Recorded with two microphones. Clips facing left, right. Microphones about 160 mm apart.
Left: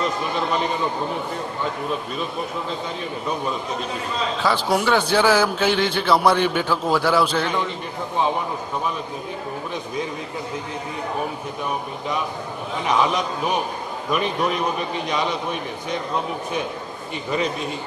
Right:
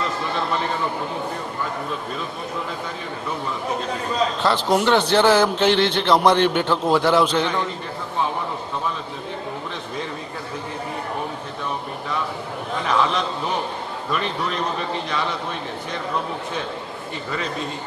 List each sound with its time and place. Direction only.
0.0 s a man's voice: 15° left (ahead or behind)
4.4 s a man's voice: 10° left (ahead or behind)
12.7 s a man's voice: 15° left (ahead or behind)